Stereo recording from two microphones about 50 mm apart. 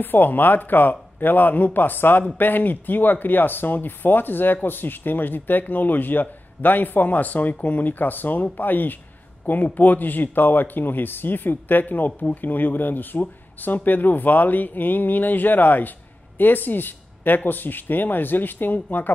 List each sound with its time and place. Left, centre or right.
0.0 s speech: left